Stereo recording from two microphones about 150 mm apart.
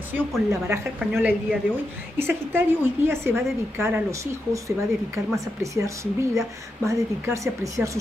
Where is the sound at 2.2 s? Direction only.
15° right (ahead or behind).